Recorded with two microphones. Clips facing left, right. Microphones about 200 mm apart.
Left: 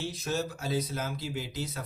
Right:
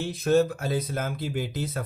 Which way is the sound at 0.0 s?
55° right (ahead or behind).